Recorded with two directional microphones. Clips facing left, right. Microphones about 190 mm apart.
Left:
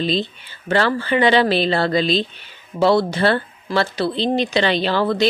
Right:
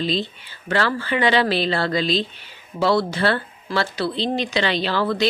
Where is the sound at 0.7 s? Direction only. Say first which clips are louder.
Left 3 dB; 25° left (ahead or behind).